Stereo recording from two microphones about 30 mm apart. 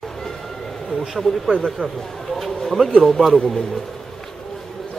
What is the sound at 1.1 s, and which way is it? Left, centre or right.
Speech, centre.